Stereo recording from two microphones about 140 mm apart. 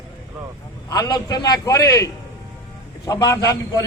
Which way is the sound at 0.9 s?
30° left (ahead or behind).